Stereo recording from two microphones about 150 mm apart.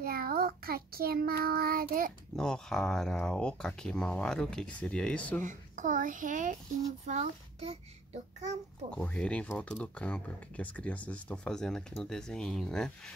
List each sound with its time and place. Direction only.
0.0 s child singing: 80° right
2.3 s speech: 5° left (ahead or behind)
5.4 s a child's voice: 60° right (ahead or behind)
7.1 s child singing: 50° right (ahead or behind)
8.9 s speech: 5° left (ahead or behind)